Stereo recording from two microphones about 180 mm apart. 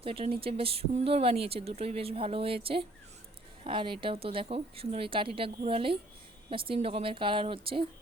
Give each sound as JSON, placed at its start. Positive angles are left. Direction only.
{"t": 0.0, "sound": "a woman's voice", "side_deg": -30}